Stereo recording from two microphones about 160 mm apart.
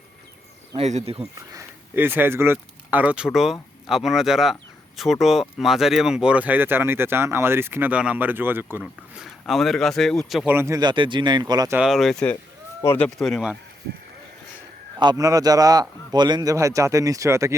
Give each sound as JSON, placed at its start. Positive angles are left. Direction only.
{"t": 0.8, "sound": "speech", "side_deg": -40}
{"t": 1.5, "sound": "speech", "side_deg": -15}
{"t": 10.5, "sound": "a man's voice", "side_deg": -15}
{"t": 11.8, "sound": "speech", "side_deg": 0}
{"t": 12.8, "sound": "speech", "side_deg": 15}
{"t": 13.1, "sound": "speech", "side_deg": 5}
{"t": 14.9, "sound": "a man's voice", "side_deg": -25}